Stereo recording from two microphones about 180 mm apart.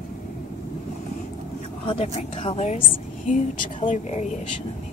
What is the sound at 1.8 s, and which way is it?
Speech, 35° left (ahead or behind).